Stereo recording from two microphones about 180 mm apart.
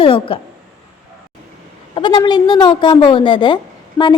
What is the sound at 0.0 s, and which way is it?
Speech, 30° left (ahead or behind).